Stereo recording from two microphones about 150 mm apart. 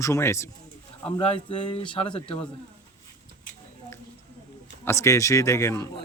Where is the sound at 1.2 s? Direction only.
40° left (ahead or behind).